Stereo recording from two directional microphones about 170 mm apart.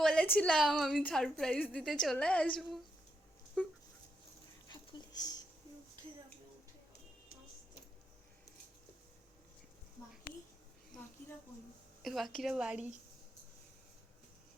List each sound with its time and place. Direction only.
0.0 s a woman's voice: 5° left (ahead or behind)
4.7 s a sound: 25° left (ahead or behind)
12.0 s a woman's voice: centre (ahead or behind)